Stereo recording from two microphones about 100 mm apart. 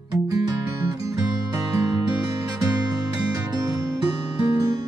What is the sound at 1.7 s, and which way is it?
Music, 35° right (ahead or behind).